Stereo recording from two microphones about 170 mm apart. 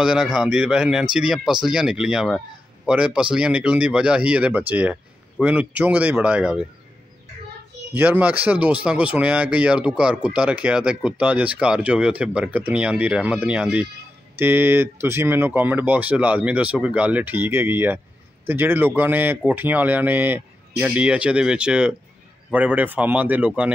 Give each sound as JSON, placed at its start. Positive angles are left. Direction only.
{"t": 0.0, "sound": "speech", "side_deg": -5}
{"t": 7.9, "sound": "speech", "side_deg": -10}